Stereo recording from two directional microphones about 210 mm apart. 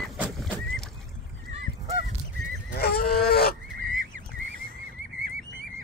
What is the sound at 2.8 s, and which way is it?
Goose, 45° left (ahead or behind).